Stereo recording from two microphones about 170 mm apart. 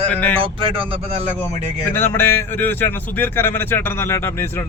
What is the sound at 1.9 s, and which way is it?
A man's voice, 15° left (ahead or behind).